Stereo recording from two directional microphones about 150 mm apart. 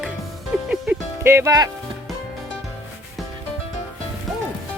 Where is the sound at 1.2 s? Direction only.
15° right (ahead or behind).